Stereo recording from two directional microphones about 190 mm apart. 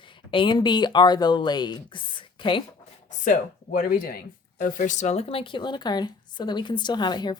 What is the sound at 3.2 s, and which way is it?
Speech, 45° left (ahead or behind).